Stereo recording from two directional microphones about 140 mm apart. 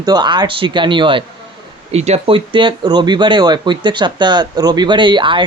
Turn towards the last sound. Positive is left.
turn(degrees=-35)  # may be behind; listen again after turning